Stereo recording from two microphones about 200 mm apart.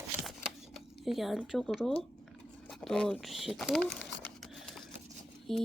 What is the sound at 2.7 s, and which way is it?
Speech, 5° left (ahead or behind).